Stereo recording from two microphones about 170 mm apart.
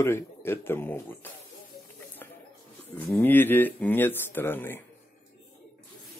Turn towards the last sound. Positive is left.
turn(degrees=10)  # may be behind; listen again after turning